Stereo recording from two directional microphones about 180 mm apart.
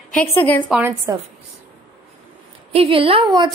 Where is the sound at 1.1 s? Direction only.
15° right (ahead or behind).